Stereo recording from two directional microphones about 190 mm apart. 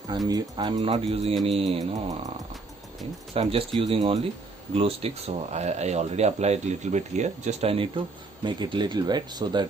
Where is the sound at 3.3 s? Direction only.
30° right (ahead or behind).